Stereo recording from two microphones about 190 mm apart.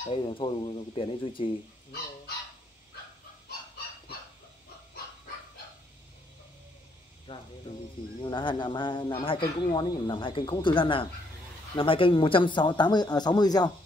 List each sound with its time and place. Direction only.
0.1 s speech: 25° left (ahead or behind)
7.3 s a sound: 25° left (ahead or behind)
8.2 s speech: 25° left (ahead or behind)